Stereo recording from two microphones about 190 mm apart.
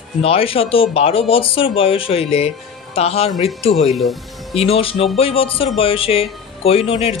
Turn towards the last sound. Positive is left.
turn(degrees=30)  # may be behind; listen again after turning